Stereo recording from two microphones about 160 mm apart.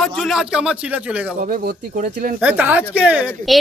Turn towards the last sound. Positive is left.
turn(degrees=0)  # may be behind; listen again after turning